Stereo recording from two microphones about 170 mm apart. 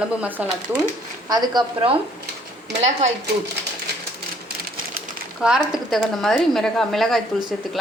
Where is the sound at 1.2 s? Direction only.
25° right (ahead or behind).